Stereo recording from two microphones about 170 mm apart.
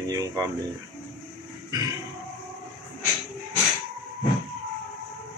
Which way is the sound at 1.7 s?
20° right (ahead or behind).